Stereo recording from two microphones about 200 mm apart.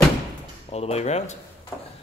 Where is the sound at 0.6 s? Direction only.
30° left (ahead or behind).